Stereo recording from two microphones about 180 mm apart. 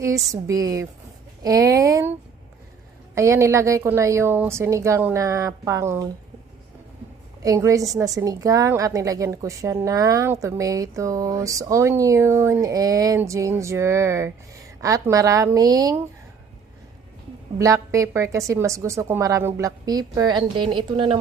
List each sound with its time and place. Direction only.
0.0 s speech: 15° right (ahead or behind)
3.2 s speech: 15° right (ahead or behind)
7.4 s a woman's voice: 15° right (ahead or behind)
17.6 s speech: 15° right (ahead or behind)